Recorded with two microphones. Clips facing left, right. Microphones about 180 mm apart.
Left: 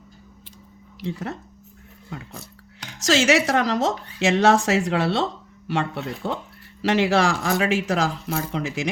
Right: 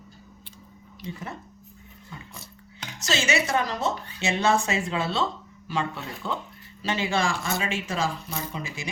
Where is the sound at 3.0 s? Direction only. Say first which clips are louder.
Left 7 dB; 90° left.